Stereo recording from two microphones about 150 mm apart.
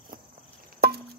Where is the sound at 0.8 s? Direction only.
90° right.